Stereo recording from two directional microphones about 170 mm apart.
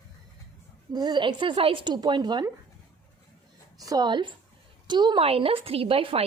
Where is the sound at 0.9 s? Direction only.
25° right (ahead or behind).